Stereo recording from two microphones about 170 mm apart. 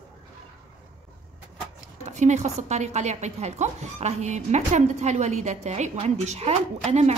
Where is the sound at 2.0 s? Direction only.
45° right (ahead or behind).